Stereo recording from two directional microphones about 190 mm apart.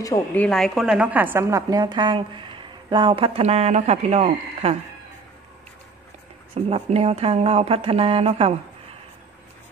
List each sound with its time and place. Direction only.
0.0 s a woman's voice: 15° left (ahead or behind); by 4.7 s 35° right (ahead or behind)
6.5 s speech: 30° right (ahead or behind)